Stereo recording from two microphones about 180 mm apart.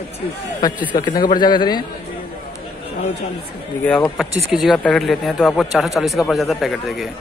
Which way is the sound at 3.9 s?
5° left (ahead or behind).